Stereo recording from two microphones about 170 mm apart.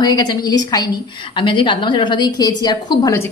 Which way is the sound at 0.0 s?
25° left (ahead or behind).